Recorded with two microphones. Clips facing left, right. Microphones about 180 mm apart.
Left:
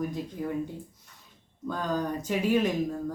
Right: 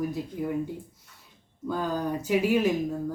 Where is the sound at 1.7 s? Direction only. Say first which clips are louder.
Right 1 dB; 10° right (ahead or behind).